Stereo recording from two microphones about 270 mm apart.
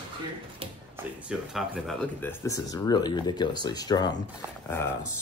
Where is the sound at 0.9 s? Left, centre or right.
Centre.